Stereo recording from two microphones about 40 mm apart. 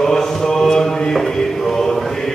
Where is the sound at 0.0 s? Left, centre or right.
Centre.